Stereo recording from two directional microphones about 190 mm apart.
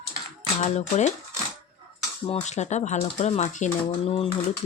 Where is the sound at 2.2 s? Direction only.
35° left (ahead or behind).